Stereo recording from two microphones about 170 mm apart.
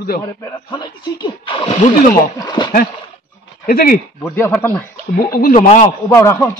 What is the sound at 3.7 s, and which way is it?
Speech, 60° left (ahead or behind).